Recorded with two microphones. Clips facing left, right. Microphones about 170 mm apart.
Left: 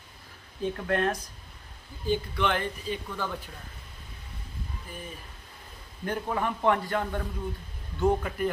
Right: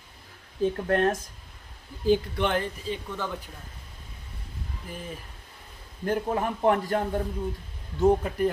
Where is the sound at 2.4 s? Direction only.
40° right (ahead or behind).